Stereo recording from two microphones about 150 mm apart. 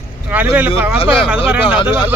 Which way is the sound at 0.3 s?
10° right (ahead or behind).